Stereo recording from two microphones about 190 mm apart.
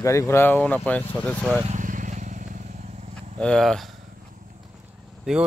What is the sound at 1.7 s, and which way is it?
Vehicle, 45° right (ahead or behind).